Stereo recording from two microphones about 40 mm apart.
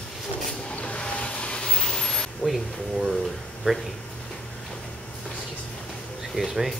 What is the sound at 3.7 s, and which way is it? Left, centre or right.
Speech, right.